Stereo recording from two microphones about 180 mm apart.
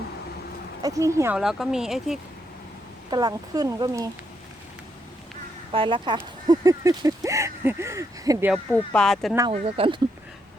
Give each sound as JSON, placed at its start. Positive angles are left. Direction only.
{"t": 0.8, "sound": "speech", "side_deg": -20}
{"t": 1.4, "sound": "speech", "side_deg": 0}
{"t": 3.1, "sound": "speech", "side_deg": -20}
{"t": 5.7, "sound": "speech", "side_deg": -30}
{"t": 8.9, "sound": "speech", "side_deg": 5}
{"t": 9.5, "sound": "speech", "side_deg": -30}